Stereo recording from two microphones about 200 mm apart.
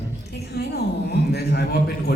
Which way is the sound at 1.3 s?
55° left (ahead or behind).